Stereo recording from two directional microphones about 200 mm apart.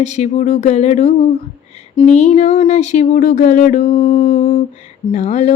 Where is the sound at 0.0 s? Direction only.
35° left (ahead or behind).